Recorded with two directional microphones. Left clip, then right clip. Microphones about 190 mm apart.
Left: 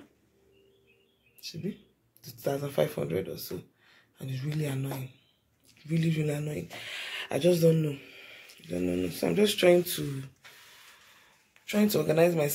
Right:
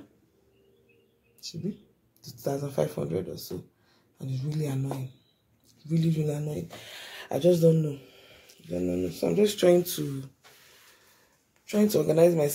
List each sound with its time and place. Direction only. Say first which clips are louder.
2.2 s speech: even; 10° left (ahead or behind)
3.0 s speech: even; 5° right (ahead or behind)
9.4 s speech: right 1 dB; 15° right (ahead or behind)
11.6 s speech: right 3 dB; 15° right (ahead or behind)